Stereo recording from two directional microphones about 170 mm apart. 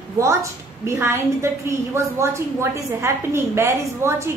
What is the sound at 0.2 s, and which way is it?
A woman's voice, 15° right (ahead or behind).